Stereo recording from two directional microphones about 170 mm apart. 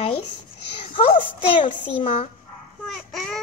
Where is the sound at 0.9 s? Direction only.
30° left (ahead or behind).